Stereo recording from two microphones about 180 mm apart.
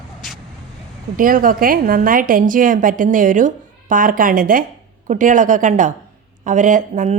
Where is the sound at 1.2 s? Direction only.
50° right (ahead or behind).